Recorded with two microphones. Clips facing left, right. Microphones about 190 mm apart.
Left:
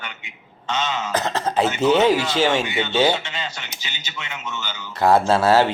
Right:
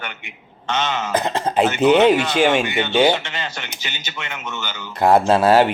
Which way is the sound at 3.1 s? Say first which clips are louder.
Right 2 dB; 55° right (ahead or behind).